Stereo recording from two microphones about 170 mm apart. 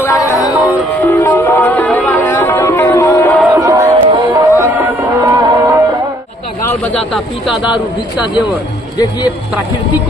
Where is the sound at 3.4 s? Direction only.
20° right (ahead or behind).